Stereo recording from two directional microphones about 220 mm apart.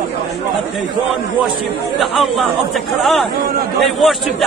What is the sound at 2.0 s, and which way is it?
A man's voice, centre (ahead or behind).